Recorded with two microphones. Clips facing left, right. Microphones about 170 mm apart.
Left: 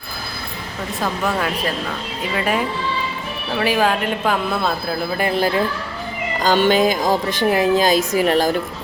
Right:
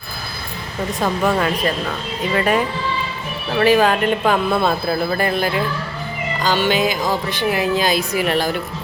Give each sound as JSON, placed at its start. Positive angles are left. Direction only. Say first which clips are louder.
{"t": 1.0, "sound": "speech", "louder": "right 3 dB", "side_deg": 0}
{"t": 3.6, "sound": "speech", "louder": "right 4 dB", "side_deg": 5}
{"t": 6.4, "sound": "speech", "louder": "left 3 dB", "side_deg": 50}